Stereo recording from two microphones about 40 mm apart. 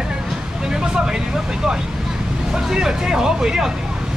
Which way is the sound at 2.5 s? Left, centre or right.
Centre.